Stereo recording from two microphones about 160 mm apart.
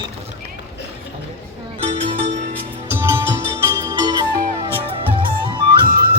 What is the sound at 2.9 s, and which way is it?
Music, 15° right (ahead or behind).